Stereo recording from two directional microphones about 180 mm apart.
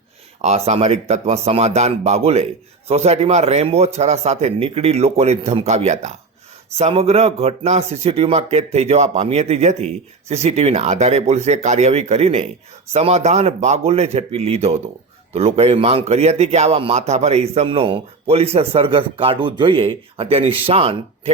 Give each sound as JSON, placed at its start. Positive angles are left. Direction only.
{"t": 0.4, "sound": "a man's voice", "side_deg": -35}